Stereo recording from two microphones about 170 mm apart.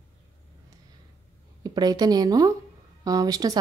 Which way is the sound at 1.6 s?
25° right (ahead or behind).